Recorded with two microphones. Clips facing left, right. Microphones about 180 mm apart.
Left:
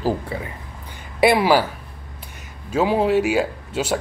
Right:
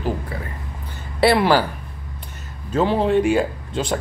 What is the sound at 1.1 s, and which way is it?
Speech, 10° left (ahead or behind).